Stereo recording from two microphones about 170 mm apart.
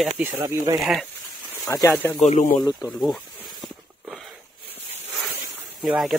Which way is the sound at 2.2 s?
50° left (ahead or behind).